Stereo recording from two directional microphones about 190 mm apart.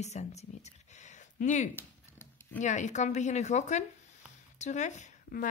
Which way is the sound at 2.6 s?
40° left (ahead or behind).